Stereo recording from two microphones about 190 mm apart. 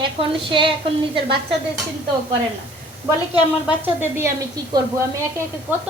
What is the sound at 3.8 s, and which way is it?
Speech, 10° right (ahead or behind).